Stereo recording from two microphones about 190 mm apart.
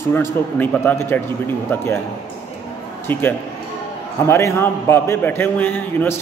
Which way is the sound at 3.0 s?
10° left (ahead or behind).